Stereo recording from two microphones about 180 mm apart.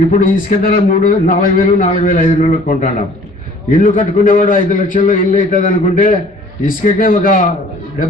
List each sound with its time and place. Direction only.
0.1 s a man's voice: 50° left (ahead or behind)